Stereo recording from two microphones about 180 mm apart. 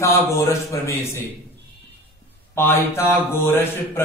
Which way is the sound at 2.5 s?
15° left (ahead or behind).